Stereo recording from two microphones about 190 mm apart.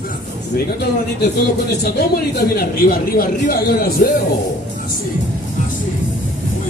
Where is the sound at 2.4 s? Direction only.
50° left (ahead or behind).